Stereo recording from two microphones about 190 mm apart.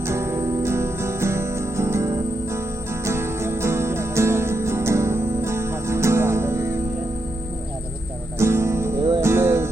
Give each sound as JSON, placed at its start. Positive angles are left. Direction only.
{"t": 0.0, "sound": "music", "side_deg": -15}
{"t": 8.4, "sound": "music", "side_deg": -15}